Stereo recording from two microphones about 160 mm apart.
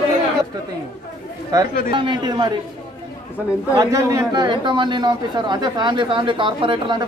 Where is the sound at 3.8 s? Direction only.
20° right (ahead or behind).